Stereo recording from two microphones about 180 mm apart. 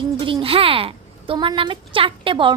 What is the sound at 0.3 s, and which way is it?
A woman's voice, 30° right (ahead or behind).